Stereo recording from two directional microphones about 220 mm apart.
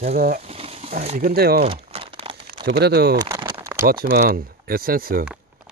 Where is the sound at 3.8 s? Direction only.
45° right (ahead or behind).